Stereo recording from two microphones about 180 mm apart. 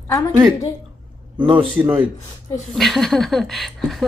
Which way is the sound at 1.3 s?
30° right (ahead or behind).